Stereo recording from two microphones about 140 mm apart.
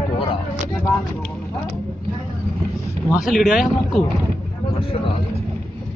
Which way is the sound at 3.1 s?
Centre (ahead or behind).